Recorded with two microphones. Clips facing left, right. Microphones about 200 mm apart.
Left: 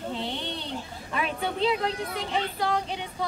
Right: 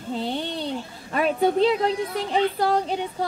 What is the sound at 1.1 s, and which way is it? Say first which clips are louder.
A woman's voice: right 9 dB; 40° right (ahead or behind).